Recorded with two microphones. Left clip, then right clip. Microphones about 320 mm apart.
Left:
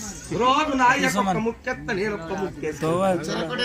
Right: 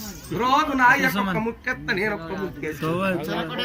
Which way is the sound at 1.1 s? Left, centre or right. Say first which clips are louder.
Left 3 dB; centre.